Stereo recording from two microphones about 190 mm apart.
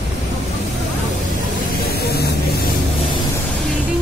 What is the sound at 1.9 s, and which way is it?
Spray, 55° left (ahead or behind).